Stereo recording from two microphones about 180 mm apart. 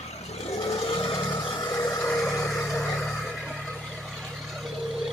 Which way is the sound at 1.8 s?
20° left (ahead or behind).